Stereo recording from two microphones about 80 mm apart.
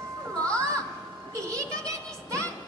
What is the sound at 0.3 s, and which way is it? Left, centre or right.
Music, centre.